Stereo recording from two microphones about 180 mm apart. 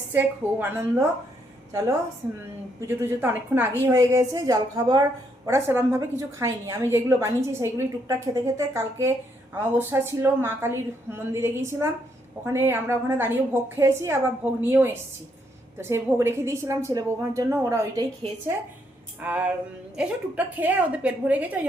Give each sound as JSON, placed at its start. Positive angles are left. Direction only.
{"t": 0.1, "sound": "a woman's voice", "side_deg": -10}
{"t": 2.8, "sound": "a woman's voice", "side_deg": -10}
{"t": 19.2, "sound": "a woman's voice", "side_deg": -10}